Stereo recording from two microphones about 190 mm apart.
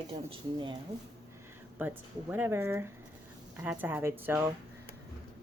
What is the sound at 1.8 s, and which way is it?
Speech, 10° right (ahead or behind).